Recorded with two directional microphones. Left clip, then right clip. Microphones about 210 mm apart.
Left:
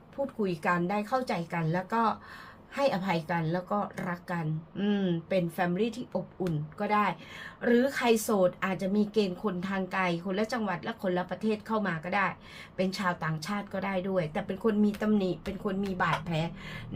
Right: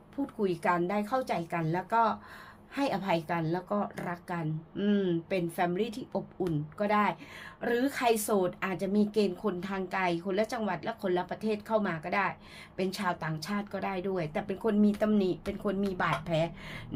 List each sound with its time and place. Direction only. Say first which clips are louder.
0.4 s speech: right 2 dB; 30° right (ahead or behind)